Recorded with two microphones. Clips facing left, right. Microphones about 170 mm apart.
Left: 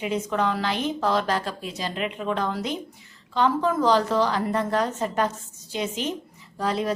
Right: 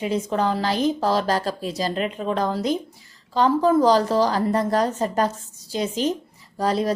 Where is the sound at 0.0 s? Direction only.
35° right (ahead or behind).